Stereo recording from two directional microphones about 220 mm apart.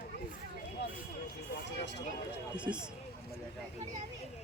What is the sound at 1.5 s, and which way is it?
Vehicle, 50° left (ahead or behind).